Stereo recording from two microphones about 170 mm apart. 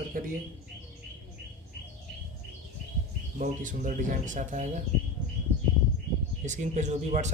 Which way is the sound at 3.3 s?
50° right (ahead or behind).